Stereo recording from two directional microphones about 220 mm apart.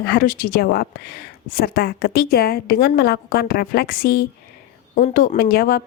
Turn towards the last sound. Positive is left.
turn(degrees=40)  # may be behind; listen again after turning